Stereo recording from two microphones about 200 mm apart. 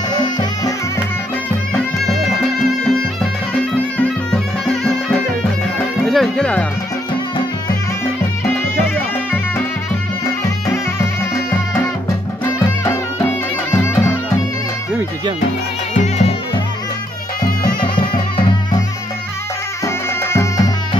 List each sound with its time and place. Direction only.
0.1 s music: 20° left (ahead or behind)
2.0 s music: centre (ahead or behind)
6.0 s speech: centre (ahead or behind)
8.7 s music: 10° left (ahead or behind)
13.7 s music: 15° left (ahead or behind)
15.9 s music: 35° left (ahead or behind)
17.7 s music: 25° left (ahead or behind)
20.3 s music: 20° left (ahead or behind)